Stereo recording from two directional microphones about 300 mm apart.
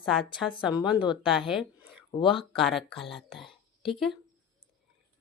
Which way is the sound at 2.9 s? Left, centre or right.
Centre.